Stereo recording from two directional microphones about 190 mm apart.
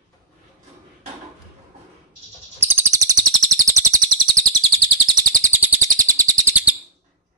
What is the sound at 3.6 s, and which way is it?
Chirp, 15° right (ahead or behind).